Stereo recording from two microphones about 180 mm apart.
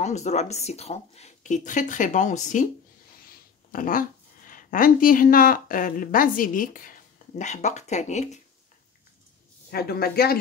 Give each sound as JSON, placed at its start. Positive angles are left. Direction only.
{"t": 0.0, "sound": "speech", "side_deg": 40}
{"t": 3.7, "sound": "speech", "side_deg": 50}
{"t": 9.7, "sound": "speech", "side_deg": 60}